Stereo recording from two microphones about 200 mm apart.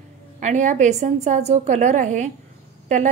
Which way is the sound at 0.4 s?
35° right (ahead or behind).